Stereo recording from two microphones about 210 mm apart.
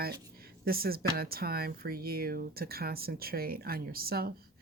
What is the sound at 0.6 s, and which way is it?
Speech, 45° right (ahead or behind).